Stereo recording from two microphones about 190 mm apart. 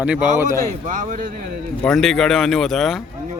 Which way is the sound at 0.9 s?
45° right (ahead or behind).